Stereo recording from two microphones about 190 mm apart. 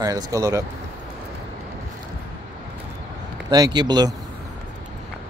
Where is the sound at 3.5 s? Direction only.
20° right (ahead or behind).